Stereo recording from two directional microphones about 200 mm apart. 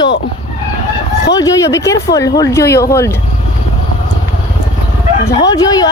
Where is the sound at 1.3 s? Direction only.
15° left (ahead or behind).